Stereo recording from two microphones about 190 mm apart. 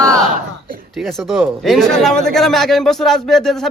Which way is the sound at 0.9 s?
Centre (ahead or behind).